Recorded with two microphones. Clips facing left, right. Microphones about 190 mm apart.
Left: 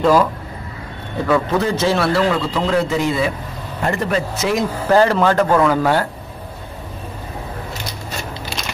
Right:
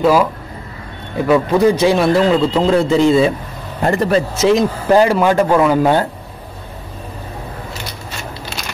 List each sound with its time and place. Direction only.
0.0 s speech: 10° right (ahead or behind)